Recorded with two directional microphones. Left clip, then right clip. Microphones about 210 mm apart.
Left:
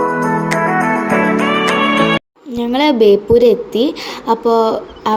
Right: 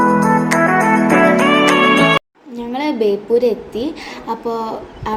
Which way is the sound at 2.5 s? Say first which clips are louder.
Left 7 dB; 35° left (ahead or behind).